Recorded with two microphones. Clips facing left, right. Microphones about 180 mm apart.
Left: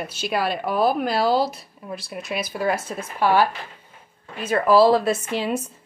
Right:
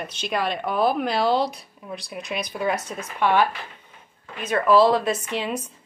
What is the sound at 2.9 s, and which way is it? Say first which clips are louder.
Speech: left 1 dB; 35° left (ahead or behind).